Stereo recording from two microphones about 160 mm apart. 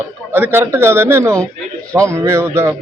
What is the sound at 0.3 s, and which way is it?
A man's voice, 15° right (ahead or behind).